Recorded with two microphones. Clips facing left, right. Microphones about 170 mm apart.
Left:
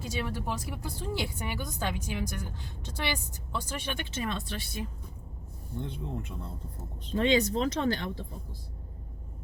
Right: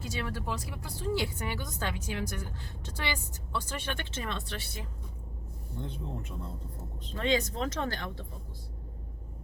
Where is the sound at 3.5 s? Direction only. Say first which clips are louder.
Left 1 dB; 10° left (ahead or behind).